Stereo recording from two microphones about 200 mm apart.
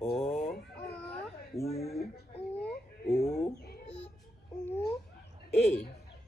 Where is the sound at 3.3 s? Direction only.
50° left (ahead or behind).